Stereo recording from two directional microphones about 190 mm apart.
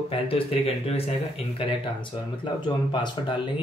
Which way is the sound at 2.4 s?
25° left (ahead or behind).